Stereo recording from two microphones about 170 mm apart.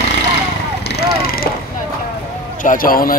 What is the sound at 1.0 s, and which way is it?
Vehicle, 60° left (ahead or behind).